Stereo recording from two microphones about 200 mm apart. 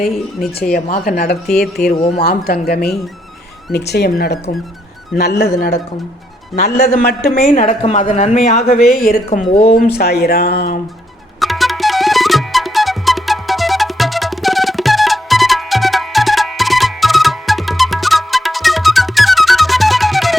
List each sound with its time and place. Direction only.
0.1 s speech: centre (ahead or behind)
0.7 s speech: 45° left (ahead or behind)
1.5 s speech: centre (ahead or behind)
2.2 s speech: 50° left (ahead or behind)
6.7 s speech: 50° left (ahead or behind)
7.3 s a woman's voice: 35° left (ahead or behind)
8.6 s speech: 50° left (ahead or behind)
11.3 s music: centre (ahead or behind)